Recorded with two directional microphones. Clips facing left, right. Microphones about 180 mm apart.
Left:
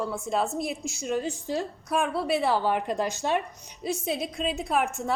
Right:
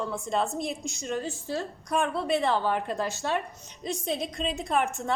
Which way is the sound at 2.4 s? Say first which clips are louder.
Left 2 dB; 15° left (ahead or behind).